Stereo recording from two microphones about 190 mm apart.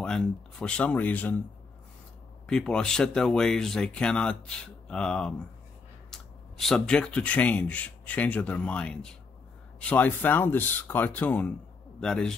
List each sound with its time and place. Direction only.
0.0 s speech: 5° left (ahead or behind)
2.4 s speech: 5° left (ahead or behind)